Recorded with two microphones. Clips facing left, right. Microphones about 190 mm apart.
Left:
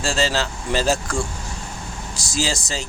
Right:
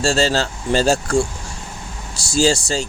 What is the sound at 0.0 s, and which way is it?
Speech, 30° right (ahead or behind).